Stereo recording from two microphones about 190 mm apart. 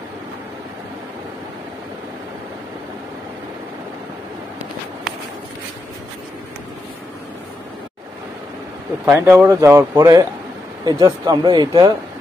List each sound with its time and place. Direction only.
9.0 s speech: 15° right (ahead or behind)